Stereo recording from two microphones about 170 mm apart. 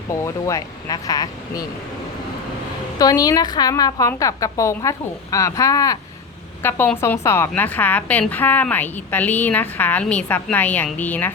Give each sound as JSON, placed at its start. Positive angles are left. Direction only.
{"t": 0.1, "sound": "a woman's voice", "side_deg": 20}
{"t": 3.0, "sound": "a woman's voice", "side_deg": 20}